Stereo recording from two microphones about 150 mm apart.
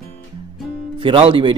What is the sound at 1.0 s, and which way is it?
Speech, 35° right (ahead or behind).